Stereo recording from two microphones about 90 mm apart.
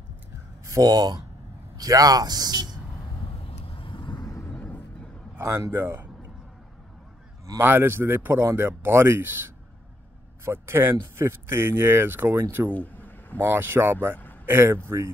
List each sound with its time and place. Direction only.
0.7 s speech: 45° right (ahead or behind)
3.4 s vehicle: 90° left; by 4.2 s 65° left (ahead or behind)
4.2 s vehicle: 35° left (ahead or behind)
4.5 s vehicle: 15° left (ahead or behind)
5.3 s a man's voice: 30° right (ahead or behind)
7.6 s speech: 25° right (ahead or behind)
12.7 s a sound: 20° left (ahead or behind)
13.4 s speech: 25° right (ahead or behind)